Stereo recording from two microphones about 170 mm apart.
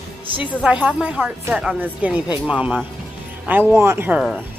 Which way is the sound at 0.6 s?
5° right (ahead or behind).